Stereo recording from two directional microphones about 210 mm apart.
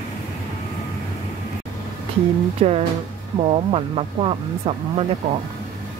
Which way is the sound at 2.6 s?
30° right (ahead or behind).